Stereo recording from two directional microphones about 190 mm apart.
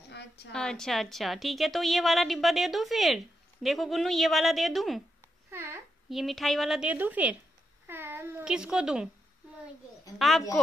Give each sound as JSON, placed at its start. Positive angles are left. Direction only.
{"t": 0.5, "sound": "a woman's voice", "side_deg": 5}
{"t": 5.5, "sound": "babbling", "side_deg": -15}
{"t": 6.0, "sound": "a woman's voice", "side_deg": 0}
{"t": 7.8, "sound": "cat", "side_deg": -10}
{"t": 10.1, "sound": "speech", "side_deg": 0}